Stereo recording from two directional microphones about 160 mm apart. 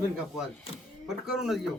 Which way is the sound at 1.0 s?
Centre (ahead or behind).